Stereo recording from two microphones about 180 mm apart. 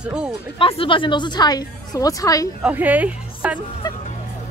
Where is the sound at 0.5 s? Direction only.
30° left (ahead or behind).